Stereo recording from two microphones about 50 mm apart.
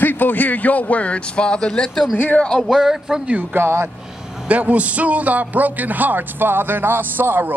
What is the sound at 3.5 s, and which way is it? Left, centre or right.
Speech, right.